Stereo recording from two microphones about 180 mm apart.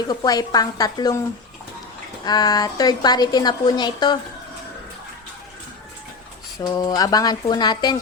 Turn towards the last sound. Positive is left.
turn(degrees=25)  # may be behind; listen again after turning